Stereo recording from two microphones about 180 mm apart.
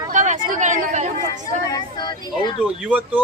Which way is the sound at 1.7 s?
25° left (ahead or behind).